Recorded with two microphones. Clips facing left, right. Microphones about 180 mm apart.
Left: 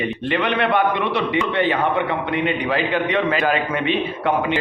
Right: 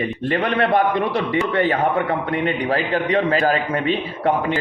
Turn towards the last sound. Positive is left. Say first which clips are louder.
# even
turn(degrees=-40)  # may be behind; listen again after turning